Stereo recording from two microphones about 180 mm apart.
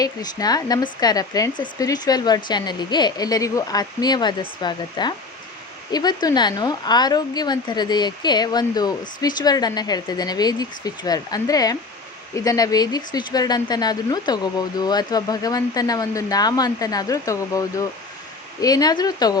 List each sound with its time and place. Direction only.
0.0 s a woman's voice: 20° left (ahead or behind)